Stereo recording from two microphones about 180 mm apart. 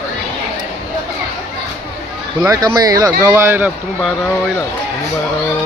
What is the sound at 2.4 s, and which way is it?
Speech, 20° right (ahead or behind).